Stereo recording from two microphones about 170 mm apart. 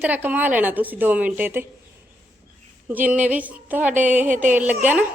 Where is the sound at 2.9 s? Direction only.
10° right (ahead or behind).